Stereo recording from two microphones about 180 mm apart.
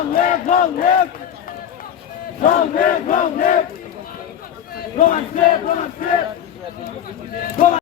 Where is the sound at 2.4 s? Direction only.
50° left (ahead or behind).